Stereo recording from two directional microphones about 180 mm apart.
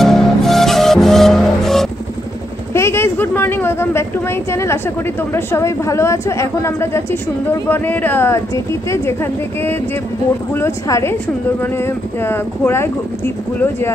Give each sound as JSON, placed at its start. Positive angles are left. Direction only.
{"t": 0.0, "sound": "music", "side_deg": 0}
{"t": 2.7, "sound": "a woman's voice", "side_deg": 15}